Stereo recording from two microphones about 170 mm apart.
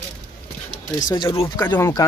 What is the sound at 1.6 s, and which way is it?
Speech, 15° left (ahead or behind).